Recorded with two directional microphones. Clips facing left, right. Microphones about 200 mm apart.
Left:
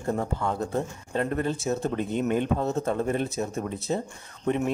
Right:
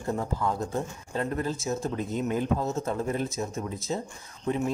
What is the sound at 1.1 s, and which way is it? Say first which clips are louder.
Speech: left 3 dB; 60° left (ahead or behind).